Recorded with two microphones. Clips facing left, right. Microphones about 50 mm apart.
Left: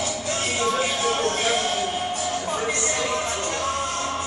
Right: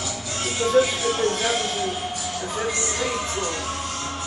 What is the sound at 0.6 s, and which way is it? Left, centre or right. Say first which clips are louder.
Music: right 6 dB; left.